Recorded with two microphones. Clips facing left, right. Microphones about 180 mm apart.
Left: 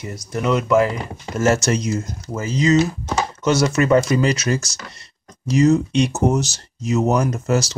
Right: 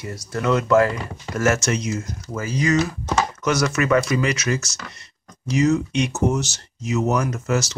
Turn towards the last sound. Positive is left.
turn(degrees=35)  # may be behind; listen again after turning